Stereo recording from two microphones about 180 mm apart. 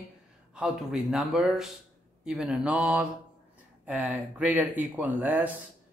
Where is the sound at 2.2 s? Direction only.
5° right (ahead or behind).